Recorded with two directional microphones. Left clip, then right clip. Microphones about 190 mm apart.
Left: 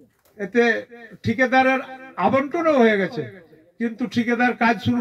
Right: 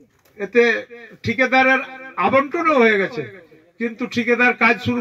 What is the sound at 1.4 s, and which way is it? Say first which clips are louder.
Speech: right 2 dB; 35° left (ahead or behind).